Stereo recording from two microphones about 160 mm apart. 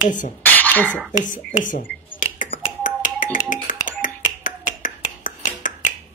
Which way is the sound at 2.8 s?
55° left (ahead or behind).